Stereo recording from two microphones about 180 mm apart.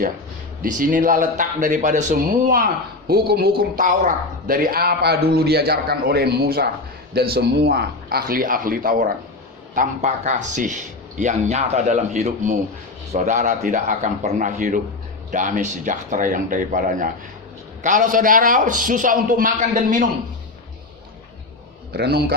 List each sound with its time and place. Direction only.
0.6 s a man's voice: 50° right (ahead or behind)
3.1 s speech: 60° right (ahead or behind)
3.6 s a man's voice: 50° right (ahead or behind)
21.9 s speech: 65° right (ahead or behind)